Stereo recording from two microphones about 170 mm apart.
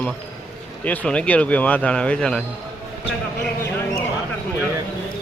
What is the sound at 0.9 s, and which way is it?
Speech, 5° left (ahead or behind).